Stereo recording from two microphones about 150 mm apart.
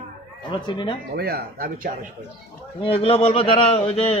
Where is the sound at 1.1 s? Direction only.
90° right.